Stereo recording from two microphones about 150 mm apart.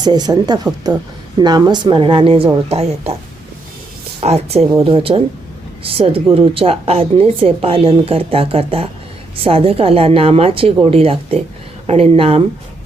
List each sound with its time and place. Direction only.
0.0 s a woman's voice: 30° right (ahead or behind); by 3.2 s 45° right (ahead or behind)
4.2 s speech: 45° right (ahead or behind)